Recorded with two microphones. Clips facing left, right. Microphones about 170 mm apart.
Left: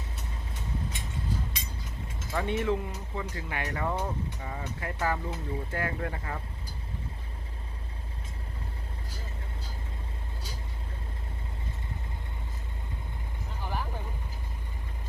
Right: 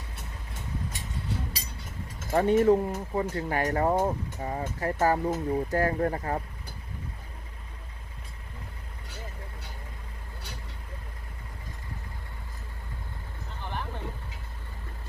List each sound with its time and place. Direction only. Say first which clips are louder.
2.3 s speech: right 8 dB; 40° right (ahead or behind)
13.7 s vehicle: left 1 dB; 5° left (ahead or behind)